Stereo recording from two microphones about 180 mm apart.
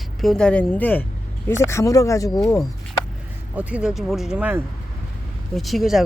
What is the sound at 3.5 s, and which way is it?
Speech, 5° right (ahead or behind).